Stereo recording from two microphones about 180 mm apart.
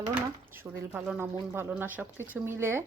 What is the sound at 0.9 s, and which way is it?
Speech, 5° right (ahead or behind).